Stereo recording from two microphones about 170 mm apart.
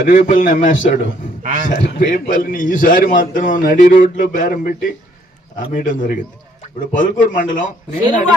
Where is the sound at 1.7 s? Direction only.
50° left (ahead or behind).